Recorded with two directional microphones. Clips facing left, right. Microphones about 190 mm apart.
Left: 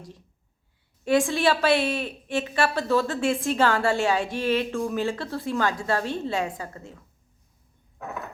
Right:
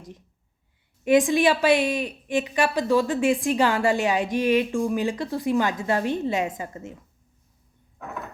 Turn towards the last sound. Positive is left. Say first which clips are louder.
# right 2 dB
turn(degrees=-20)  # may be behind; listen again after turning